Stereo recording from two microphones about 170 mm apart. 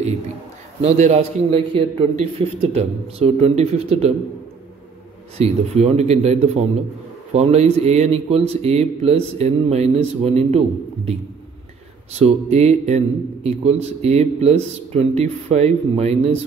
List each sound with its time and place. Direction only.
0.8 s a man's voice: 40° right (ahead or behind)
5.4 s a man's voice: 40° right (ahead or behind)
12.1 s a man's voice: 40° right (ahead or behind)